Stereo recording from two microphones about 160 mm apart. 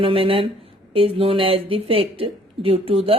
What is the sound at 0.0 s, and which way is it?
Speech, 35° right (ahead or behind).